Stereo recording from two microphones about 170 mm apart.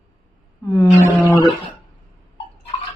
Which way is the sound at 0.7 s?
20° left (ahead or behind).